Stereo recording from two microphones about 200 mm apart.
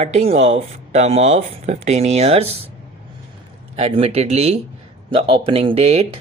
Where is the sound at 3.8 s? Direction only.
30° right (ahead or behind).